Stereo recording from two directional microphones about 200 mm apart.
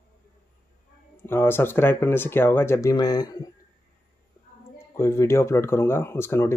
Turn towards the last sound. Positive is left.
turn(degrees=15)  # may be behind; listen again after turning